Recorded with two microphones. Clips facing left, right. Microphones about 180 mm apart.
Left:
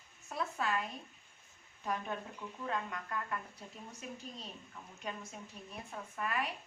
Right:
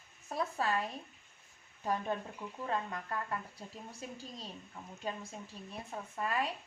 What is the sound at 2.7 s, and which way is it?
A woman's voice, 30° right (ahead or behind).